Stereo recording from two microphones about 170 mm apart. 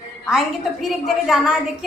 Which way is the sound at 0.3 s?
Centre (ahead or behind).